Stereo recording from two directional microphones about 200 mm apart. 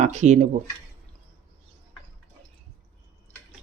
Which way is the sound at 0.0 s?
35° right (ahead or behind).